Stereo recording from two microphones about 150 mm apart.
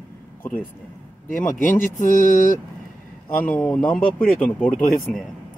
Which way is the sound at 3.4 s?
10° left (ahead or behind).